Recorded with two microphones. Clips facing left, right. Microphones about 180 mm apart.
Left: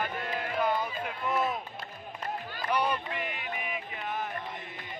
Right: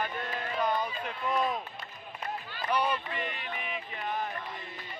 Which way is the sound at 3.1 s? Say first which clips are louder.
Left 1 dB; 10° left (ahead or behind).